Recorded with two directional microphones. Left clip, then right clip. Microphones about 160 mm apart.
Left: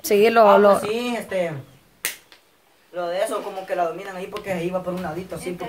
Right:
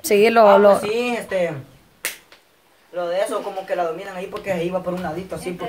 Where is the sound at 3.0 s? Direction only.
10° left (ahead or behind).